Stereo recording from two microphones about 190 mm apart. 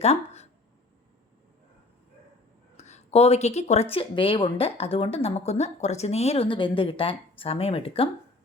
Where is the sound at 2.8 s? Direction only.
35° left (ahead or behind).